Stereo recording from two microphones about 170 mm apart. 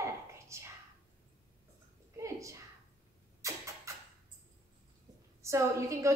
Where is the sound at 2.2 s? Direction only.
20° right (ahead or behind).